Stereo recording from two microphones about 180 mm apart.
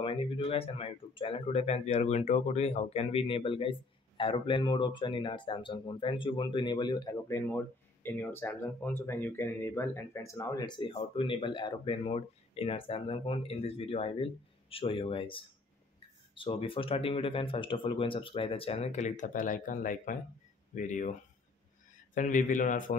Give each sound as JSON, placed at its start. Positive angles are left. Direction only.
{"t": 0.0, "sound": "speech", "side_deg": 30}